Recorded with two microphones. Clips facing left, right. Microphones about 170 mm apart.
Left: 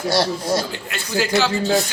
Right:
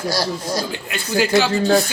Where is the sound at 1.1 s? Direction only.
15° right (ahead or behind).